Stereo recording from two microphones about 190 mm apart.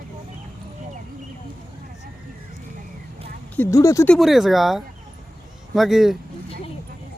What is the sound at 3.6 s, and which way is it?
Speech, 15° left (ahead or behind).